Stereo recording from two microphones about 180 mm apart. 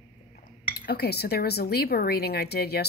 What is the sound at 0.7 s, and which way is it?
Speech, 65° left (ahead or behind).